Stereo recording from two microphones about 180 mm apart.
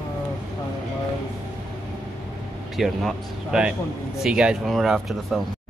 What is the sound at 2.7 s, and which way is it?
Speech, centre (ahead or behind).